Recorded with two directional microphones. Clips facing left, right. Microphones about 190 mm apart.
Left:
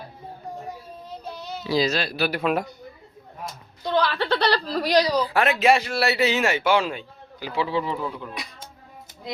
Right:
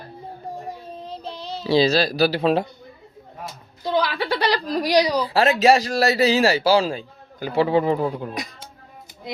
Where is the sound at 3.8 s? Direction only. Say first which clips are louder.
Right 1 dB; 10° right (ahead or behind).